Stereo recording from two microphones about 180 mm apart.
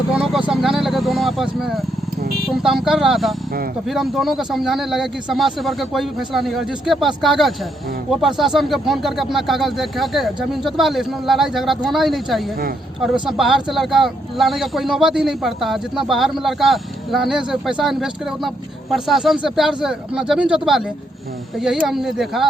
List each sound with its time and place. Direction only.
0.1 s vehicle: 5° right (ahead or behind)
2.5 s speech: centre (ahead or behind)